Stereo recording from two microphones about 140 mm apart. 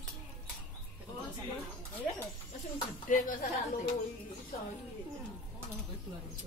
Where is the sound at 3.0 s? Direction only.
70° left (ahead or behind).